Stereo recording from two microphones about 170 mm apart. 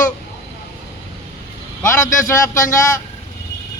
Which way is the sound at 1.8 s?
15° left (ahead or behind).